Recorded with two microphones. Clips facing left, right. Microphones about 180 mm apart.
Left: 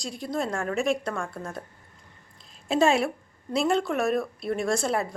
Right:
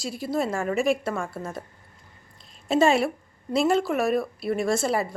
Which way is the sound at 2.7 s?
Centre (ahead or behind).